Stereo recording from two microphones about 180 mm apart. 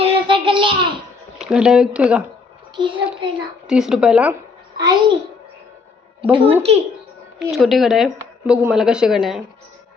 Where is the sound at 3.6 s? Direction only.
5° right (ahead or behind).